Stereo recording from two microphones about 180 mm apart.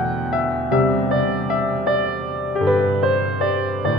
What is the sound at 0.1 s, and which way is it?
Music, 5° right (ahead or behind).